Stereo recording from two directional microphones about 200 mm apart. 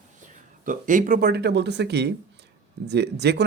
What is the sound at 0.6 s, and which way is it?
Speech, 40° right (ahead or behind).